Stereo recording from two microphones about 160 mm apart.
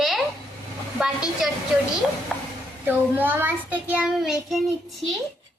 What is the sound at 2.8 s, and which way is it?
A child's voice, 10° right (ahead or behind).